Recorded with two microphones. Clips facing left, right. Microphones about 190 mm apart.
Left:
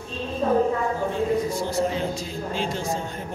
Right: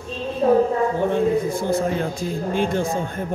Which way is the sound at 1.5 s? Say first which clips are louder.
Right 3 dB; 55° right (ahead or behind).